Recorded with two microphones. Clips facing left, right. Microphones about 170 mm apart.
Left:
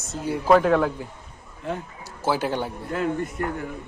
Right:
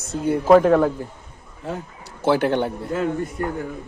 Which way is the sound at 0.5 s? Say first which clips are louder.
Right 4 dB; 35° right (ahead or behind).